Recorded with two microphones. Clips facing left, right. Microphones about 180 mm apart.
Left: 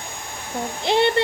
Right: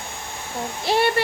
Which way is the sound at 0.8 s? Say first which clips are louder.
Left 2 dB; 20° left (ahead or behind).